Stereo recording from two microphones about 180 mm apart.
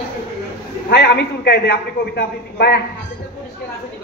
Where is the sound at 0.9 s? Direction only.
70° left (ahead or behind).